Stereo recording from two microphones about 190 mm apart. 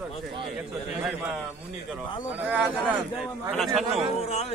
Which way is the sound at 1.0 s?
5° right (ahead or behind).